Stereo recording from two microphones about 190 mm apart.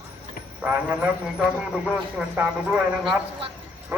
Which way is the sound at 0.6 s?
5° right (ahead or behind).